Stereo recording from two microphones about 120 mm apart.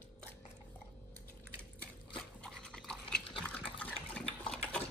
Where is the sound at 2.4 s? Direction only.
5° left (ahead or behind).